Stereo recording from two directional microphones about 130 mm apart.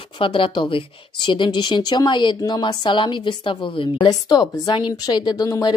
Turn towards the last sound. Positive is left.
turn(degrees=30)  # may be behind; listen again after turning